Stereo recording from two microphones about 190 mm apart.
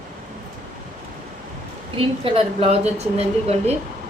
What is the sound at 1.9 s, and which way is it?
A woman's voice, 30° right (ahead or behind).